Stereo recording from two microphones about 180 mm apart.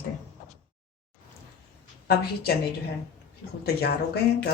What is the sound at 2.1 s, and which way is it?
Speech, 60° left (ahead or behind).